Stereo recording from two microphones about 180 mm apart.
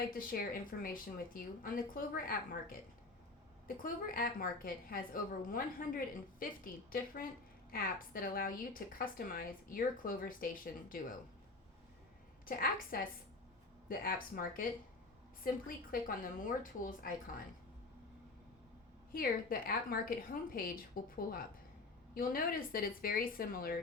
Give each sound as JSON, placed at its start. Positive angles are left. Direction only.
{"t": 0.1, "sound": "a woman's voice", "side_deg": 50}
{"t": 12.5, "sound": "a woman's voice", "side_deg": 55}
{"t": 19.1, "sound": "a woman's voice", "side_deg": 55}